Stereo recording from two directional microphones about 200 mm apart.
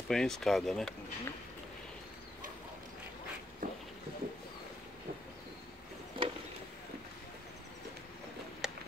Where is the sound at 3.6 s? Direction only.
45° right (ahead or behind).